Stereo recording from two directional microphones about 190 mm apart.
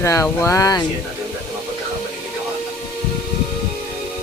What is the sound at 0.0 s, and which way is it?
Speech, 15° left (ahead or behind).